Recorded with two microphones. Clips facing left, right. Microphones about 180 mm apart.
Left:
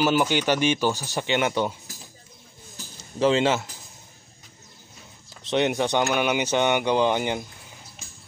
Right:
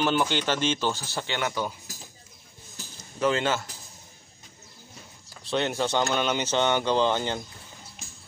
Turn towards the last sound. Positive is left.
turn(degrees=15)  # may be behind; listen again after turning